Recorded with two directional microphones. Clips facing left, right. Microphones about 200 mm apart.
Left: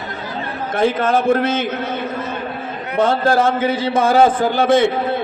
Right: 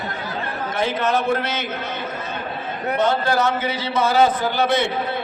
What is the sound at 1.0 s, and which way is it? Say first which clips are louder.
Speech: left 4 dB; 50° left (ahead or behind).